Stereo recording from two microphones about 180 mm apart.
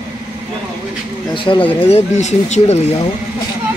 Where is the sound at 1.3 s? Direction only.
30° left (ahead or behind).